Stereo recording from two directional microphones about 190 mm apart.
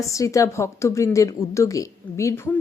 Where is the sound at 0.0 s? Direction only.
15° left (ahead or behind).